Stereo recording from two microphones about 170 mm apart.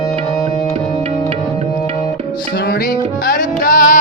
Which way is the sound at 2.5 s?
60° left (ahead or behind).